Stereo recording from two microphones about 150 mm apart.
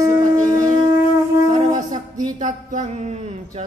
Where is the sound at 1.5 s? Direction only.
55° right (ahead or behind).